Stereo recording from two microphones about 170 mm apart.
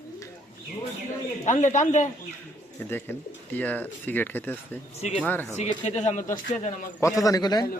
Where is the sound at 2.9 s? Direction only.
10° left (ahead or behind).